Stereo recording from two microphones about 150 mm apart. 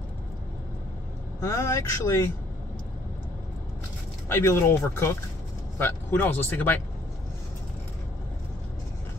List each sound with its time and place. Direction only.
1.4 s speech: 20° left (ahead or behind)
4.3 s a man's voice: 15° left (ahead or behind)